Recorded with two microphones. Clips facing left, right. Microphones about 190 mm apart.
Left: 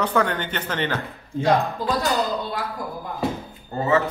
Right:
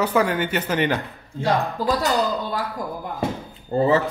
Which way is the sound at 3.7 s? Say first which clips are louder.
Right 3 dB; 30° right (ahead or behind).